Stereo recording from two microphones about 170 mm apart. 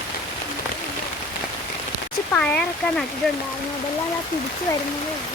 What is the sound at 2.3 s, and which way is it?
Speech, 5° left (ahead or behind).